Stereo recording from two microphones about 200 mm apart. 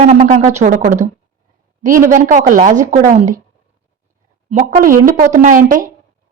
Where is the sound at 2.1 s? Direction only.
40° right (ahead or behind).